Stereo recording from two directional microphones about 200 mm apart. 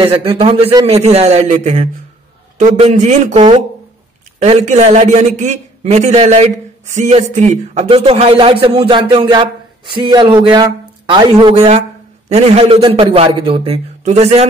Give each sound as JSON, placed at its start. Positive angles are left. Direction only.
{"t": 0.0, "sound": "a man's voice", "side_deg": -25}